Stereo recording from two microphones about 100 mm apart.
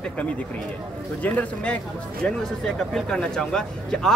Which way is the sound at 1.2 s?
15° left (ahead or behind).